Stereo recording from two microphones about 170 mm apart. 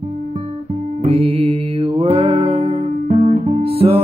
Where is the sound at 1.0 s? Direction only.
35° right (ahead or behind).